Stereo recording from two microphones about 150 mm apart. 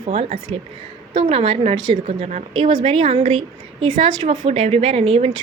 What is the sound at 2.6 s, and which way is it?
A woman's voice, 30° right (ahead or behind).